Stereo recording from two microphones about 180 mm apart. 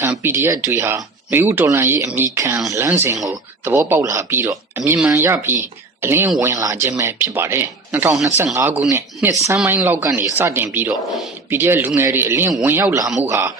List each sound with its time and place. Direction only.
0.0 s speech: 10° right (ahead or behind)